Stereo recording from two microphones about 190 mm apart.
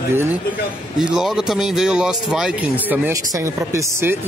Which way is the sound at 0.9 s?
Centre (ahead or behind).